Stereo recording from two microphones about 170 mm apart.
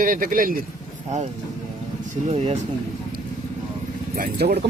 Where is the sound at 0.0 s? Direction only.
55° right (ahead or behind).